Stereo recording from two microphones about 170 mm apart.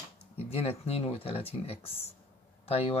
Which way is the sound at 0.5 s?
35° left (ahead or behind).